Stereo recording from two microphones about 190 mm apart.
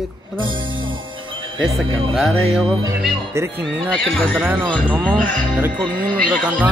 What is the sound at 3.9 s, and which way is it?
Speech, 5° left (ahead or behind).